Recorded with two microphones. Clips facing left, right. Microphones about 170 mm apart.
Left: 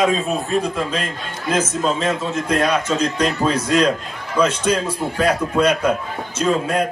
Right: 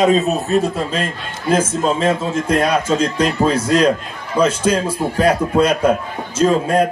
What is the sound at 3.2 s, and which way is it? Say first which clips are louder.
A man's voice: right 3 dB; 25° right (ahead or behind).